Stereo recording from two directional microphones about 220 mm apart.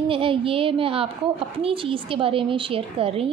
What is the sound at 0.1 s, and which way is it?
A woman's voice, 25° right (ahead or behind).